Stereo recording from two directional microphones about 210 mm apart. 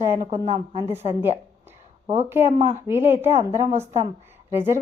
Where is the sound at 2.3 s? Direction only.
10° right (ahead or behind).